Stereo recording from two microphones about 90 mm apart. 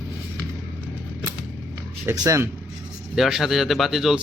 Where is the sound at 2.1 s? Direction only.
45° right (ahead or behind).